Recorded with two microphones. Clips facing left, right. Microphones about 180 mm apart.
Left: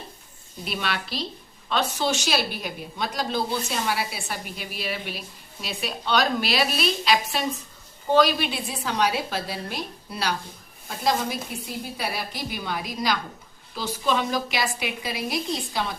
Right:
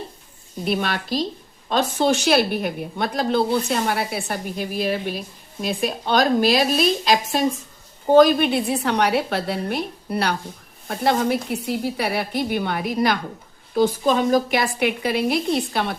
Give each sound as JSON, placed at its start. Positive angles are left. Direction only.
{"t": 0.6, "sound": "a woman's voice", "side_deg": -50}
{"t": 13.7, "sound": "a woman's voice", "side_deg": -45}